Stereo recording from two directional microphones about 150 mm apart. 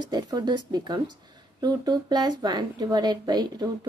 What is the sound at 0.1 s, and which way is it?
A woman's voice, 25° right (ahead or behind).